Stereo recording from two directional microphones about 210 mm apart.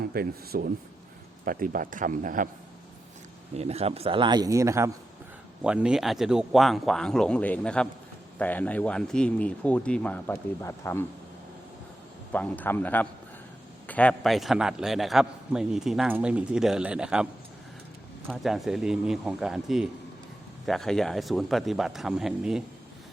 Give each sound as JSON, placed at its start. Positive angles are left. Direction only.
{"t": 0.1, "sound": "speech", "side_deg": -45}
{"t": 3.5, "sound": "a man's voice", "side_deg": -30}
{"t": 12.3, "sound": "a man's voice", "side_deg": 5}
{"t": 18.3, "sound": "a man's voice", "side_deg": 0}